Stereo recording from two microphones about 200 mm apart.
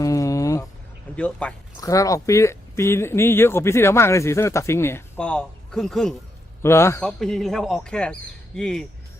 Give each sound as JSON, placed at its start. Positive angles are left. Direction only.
{"t": 0.0, "sound": "a sound", "side_deg": 15}
{"t": 1.1, "sound": "speech", "side_deg": 5}
{"t": 1.7, "sound": "speech", "side_deg": 15}
{"t": 6.6, "sound": "speech", "side_deg": 15}
{"t": 7.2, "sound": "speech", "side_deg": 0}